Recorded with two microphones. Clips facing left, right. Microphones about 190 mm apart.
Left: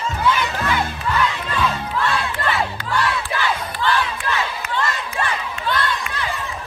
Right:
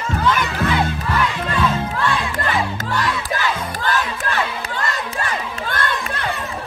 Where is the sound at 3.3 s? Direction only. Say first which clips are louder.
Right 1 dB; 45° right (ahead or behind).